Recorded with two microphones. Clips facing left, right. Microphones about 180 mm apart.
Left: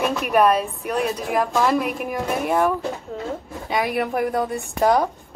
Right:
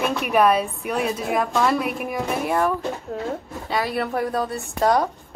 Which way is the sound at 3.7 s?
15° left (ahead or behind).